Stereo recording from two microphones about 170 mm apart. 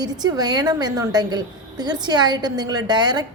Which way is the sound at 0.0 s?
25° right (ahead or behind).